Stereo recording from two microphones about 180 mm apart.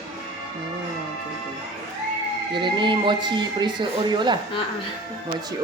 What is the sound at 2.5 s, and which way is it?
Speech, 25° right (ahead or behind).